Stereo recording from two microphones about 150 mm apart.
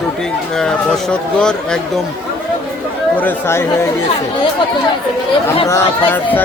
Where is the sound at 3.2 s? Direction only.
15° left (ahead or behind).